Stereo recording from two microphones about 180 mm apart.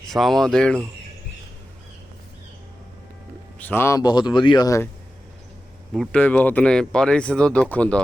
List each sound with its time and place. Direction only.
0.1 s speech: centre (ahead or behind)
3.6 s speech: 10° left (ahead or behind)
5.9 s speech: 5° left (ahead or behind)